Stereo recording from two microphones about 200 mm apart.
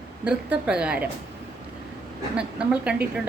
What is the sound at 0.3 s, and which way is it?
Speech, 5° right (ahead or behind).